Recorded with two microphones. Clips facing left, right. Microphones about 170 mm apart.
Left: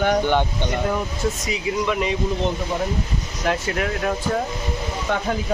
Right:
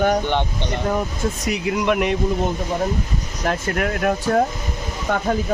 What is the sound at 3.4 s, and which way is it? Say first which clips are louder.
Speech: right 1 dB; 50° right (ahead or behind).